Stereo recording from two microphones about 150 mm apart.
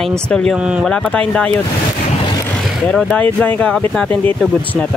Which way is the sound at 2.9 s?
5° left (ahead or behind).